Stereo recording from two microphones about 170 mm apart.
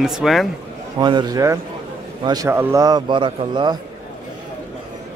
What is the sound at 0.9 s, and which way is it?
A man's voice, 25° right (ahead or behind).